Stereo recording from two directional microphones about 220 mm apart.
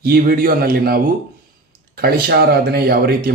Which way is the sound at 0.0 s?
40° right (ahead or behind).